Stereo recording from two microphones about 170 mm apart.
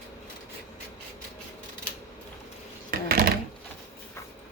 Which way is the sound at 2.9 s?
60° right (ahead or behind).